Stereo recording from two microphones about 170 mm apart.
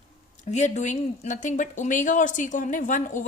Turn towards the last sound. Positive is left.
turn(degrees=50)  # may be behind; listen again after turning